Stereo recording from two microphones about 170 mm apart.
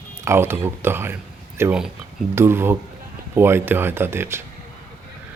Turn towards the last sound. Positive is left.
turn(degrees=-15)  # may be behind; listen again after turning